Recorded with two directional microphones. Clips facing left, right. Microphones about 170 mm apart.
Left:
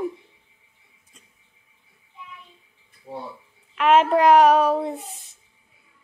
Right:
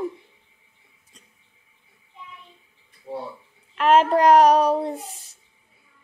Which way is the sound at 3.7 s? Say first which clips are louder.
Even; centre (ahead or behind).